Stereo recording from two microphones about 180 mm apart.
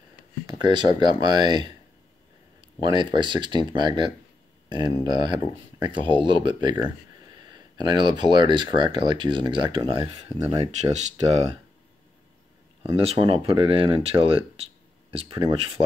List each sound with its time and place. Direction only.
0.5 s speech: 25° right (ahead or behind)
2.8 s speech: 25° right (ahead or behind)
12.8 s speech: 35° right (ahead or behind)